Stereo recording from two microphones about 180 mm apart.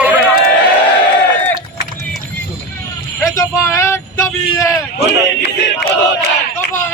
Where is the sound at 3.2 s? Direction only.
20° left (ahead or behind).